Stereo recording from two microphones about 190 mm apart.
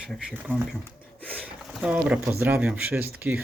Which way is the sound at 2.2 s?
10° right (ahead or behind).